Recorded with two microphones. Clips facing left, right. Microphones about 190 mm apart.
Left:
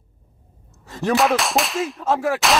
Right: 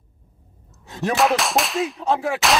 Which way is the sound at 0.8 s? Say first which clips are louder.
Left 1 dB; centre (ahead or behind).